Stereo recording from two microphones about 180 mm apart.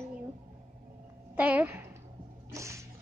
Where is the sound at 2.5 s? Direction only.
15° right (ahead or behind).